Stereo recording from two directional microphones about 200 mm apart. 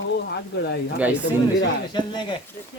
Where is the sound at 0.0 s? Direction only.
60° left (ahead or behind).